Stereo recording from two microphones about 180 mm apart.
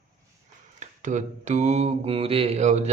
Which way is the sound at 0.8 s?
45° right (ahead or behind).